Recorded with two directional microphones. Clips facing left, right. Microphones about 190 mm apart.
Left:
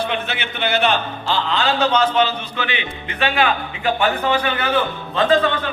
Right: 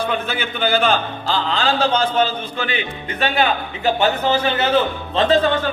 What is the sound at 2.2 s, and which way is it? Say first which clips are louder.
A man's voice: right 1 dB; 45° right (ahead or behind).